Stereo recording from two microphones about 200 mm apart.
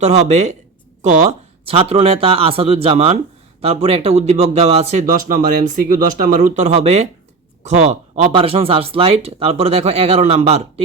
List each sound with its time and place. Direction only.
0.0 s speech: 35° right (ahead or behind)